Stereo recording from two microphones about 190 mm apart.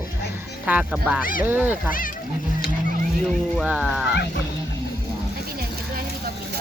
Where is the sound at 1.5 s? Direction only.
10° right (ahead or behind).